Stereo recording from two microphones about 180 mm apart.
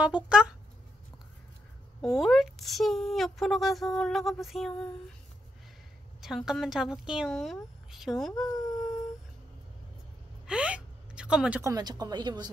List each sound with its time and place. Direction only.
0.0 s speech: 5° right (ahead or behind)
2.0 s speech: centre (ahead or behind)
6.2 s speech: centre (ahead or behind)
10.4 s a sound: 5° right (ahead or behind)
11.6 s speech: 20° right (ahead or behind)